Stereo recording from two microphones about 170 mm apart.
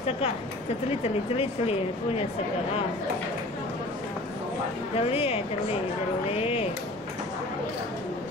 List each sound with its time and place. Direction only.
1.0 s speech: 35° left (ahead or behind)
4.9 s speech: 35° left (ahead or behind)